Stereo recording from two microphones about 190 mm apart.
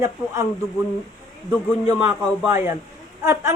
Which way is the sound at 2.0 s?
10° right (ahead or behind).